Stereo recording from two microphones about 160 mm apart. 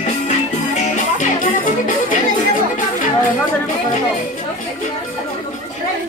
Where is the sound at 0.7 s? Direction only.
50° left (ahead or behind).